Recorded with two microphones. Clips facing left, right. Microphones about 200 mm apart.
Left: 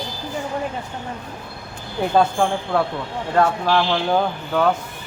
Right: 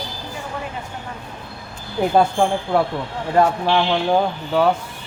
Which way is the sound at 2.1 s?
10° right (ahead or behind).